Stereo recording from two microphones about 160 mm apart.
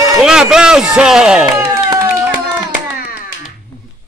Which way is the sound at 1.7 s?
20° right (ahead or behind).